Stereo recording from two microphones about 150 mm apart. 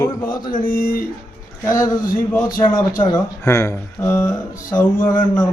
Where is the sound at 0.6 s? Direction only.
65° left (ahead or behind).